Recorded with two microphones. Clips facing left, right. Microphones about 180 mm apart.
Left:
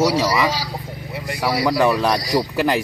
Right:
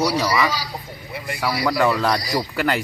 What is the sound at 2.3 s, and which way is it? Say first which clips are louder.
Speech: left 4 dB; centre (ahead or behind).